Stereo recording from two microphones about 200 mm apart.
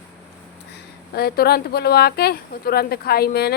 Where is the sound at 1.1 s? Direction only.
50° left (ahead or behind).